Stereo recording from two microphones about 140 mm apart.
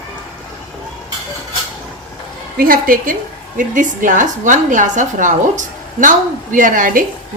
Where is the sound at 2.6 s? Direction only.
90° right.